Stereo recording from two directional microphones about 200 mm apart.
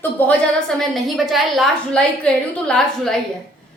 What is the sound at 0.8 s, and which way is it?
A woman's voice, centre (ahead or behind).